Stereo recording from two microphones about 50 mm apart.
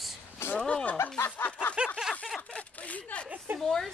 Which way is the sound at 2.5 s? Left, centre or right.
Left.